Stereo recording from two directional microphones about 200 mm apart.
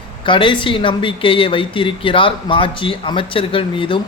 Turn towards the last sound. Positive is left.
turn(degrees=25)  # may be behind; listen again after turning